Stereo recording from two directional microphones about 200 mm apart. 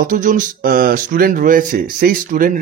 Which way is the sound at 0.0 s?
40° right (ahead or behind).